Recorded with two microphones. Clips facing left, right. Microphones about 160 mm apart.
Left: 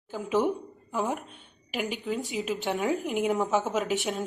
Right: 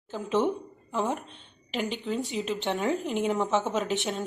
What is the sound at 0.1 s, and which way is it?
A woman's voice, 10° left (ahead or behind).